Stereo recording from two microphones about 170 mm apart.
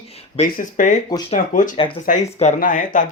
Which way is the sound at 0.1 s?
35° left (ahead or behind).